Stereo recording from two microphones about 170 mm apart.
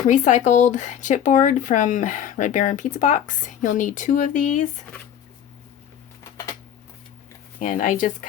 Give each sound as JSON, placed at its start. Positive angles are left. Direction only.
{"t": 0.1, "sound": "speech", "side_deg": 45}
{"t": 7.6, "sound": "speech", "side_deg": 50}